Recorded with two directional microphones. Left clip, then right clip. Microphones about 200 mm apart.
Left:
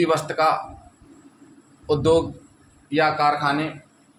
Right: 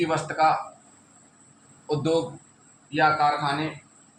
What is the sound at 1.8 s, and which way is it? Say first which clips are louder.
Speech: left 6 dB; 50° left (ahead or behind).